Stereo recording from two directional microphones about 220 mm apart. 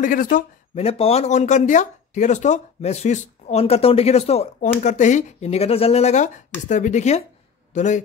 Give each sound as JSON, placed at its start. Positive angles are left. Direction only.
{"t": 0.0, "sound": "a man's voice", "side_deg": 40}